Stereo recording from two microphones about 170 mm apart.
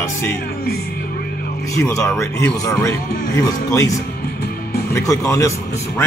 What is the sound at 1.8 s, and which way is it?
Speech, 15° left (ahead or behind).